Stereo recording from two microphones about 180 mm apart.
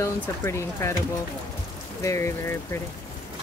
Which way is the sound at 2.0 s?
15° left (ahead or behind).